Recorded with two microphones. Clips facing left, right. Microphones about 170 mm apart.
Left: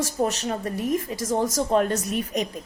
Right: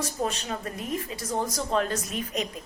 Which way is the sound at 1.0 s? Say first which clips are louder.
Left 5 dB; 45° left (ahead or behind).